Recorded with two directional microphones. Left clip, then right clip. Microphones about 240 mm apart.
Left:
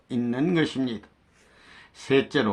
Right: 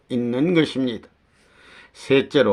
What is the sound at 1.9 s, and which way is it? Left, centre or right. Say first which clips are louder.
Speech: right 5 dB; right.